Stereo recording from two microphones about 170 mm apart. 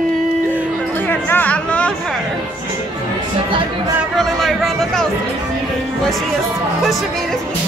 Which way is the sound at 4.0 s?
Centre (ahead or behind).